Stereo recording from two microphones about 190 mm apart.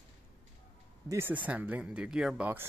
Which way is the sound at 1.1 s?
10° right (ahead or behind).